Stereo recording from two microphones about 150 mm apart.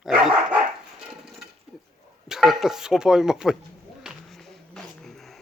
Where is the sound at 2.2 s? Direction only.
Centre (ahead or behind).